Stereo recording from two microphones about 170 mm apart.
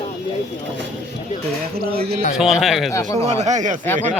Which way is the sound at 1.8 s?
65° right (ahead or behind).